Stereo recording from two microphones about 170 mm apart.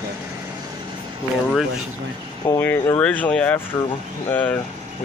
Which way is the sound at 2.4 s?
15° left (ahead or behind).